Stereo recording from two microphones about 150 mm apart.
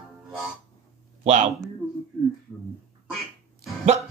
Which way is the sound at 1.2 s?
50° right (ahead or behind).